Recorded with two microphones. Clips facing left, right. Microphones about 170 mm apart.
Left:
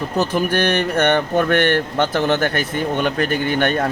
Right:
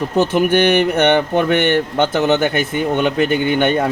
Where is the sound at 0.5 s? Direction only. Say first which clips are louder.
Right 5 dB; 10° right (ahead or behind).